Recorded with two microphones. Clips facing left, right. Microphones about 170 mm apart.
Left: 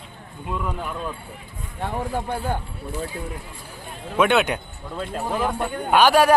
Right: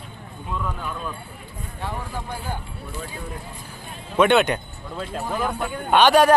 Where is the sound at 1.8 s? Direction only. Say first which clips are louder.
Left 5 dB; 55° left (ahead or behind).